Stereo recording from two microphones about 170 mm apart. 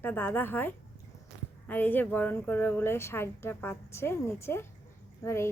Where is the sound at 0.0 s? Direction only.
10° left (ahead or behind).